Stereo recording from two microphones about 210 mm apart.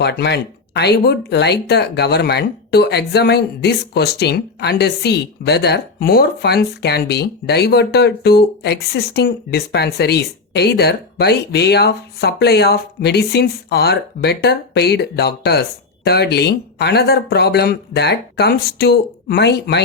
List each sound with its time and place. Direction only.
0.0 s speech: 55° left (ahead or behind)